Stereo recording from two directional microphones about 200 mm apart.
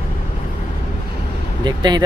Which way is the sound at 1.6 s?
20° right (ahead or behind).